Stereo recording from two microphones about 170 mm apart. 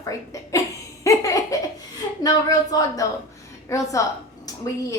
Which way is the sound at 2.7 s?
20° left (ahead or behind).